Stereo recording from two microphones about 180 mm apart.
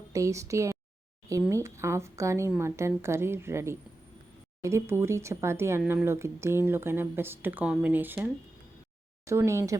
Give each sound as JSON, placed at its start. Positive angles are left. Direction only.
{"t": 0.1, "sound": "speech", "side_deg": -15}